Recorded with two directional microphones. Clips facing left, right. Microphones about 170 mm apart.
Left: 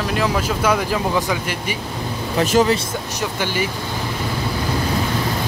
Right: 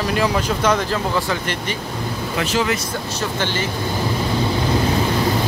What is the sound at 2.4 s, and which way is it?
Speech, 40° left (ahead or behind).